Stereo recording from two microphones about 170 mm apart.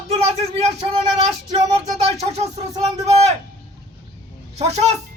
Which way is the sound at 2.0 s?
40° right (ahead or behind).